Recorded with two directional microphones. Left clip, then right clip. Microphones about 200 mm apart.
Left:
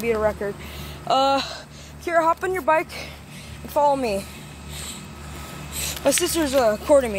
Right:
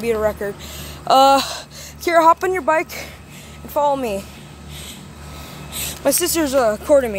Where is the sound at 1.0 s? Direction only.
35° right (ahead or behind).